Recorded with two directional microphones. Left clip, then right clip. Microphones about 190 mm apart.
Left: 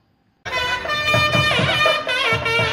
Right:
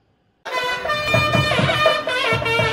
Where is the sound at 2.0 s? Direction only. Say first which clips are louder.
Even; 20° left (ahead or behind).